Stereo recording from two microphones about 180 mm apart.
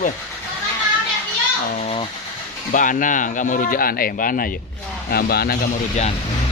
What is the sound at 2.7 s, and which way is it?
A man's voice, 45° left (ahead or behind).